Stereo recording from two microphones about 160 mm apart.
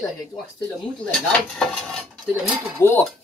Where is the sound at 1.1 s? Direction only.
5° left (ahead or behind).